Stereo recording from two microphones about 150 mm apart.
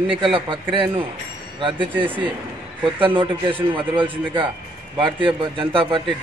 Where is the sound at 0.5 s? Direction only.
35° right (ahead or behind).